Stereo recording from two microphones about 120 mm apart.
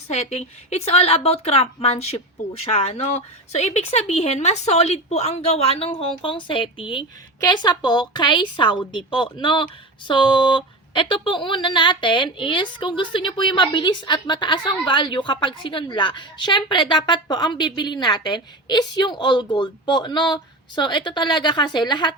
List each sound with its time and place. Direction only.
0.1 s a woman's voice: 65° left (ahead or behind); by 22.1 s 40° left (ahead or behind)